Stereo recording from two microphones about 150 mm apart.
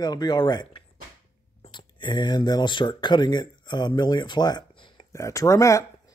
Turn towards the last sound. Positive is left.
turn(degrees=20)  # may be behind; listen again after turning